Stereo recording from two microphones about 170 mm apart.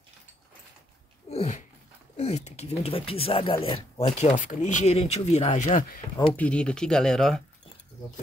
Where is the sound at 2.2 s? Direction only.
40° left (ahead or behind).